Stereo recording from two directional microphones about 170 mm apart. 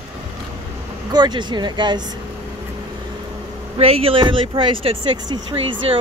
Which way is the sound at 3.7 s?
35° right (ahead or behind).